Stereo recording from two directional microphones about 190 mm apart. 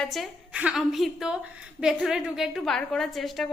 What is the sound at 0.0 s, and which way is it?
A woman's voice, centre (ahead or behind).